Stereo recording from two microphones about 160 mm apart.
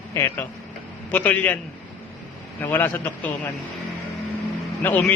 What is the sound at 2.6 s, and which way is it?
Speech, 10° left (ahead or behind).